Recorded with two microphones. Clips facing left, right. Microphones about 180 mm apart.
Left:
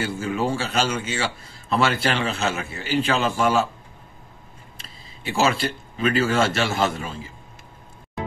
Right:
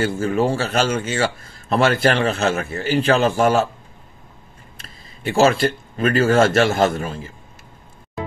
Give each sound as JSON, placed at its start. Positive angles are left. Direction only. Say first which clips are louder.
{"t": 0.0, "sound": "a man's voice", "louder": "right 5 dB", "side_deg": -50}
{"t": 4.7, "sound": "speech", "louder": "right 1 dB", "side_deg": -50}